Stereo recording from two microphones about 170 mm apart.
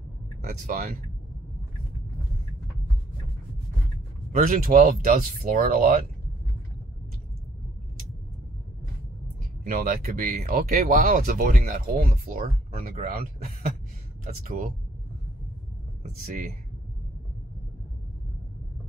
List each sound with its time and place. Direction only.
0.4 s speech: 55° right (ahead or behind)
4.4 s speech: 55° right (ahead or behind)
4.8 s speech: 45° right (ahead or behind)
9.7 s speech: 55° right (ahead or behind)